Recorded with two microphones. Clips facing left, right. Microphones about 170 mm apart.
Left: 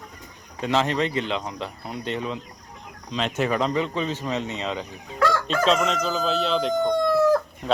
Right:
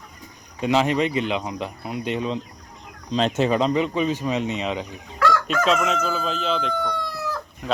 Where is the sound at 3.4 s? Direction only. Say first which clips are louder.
Right 3 dB; 20° right (ahead or behind).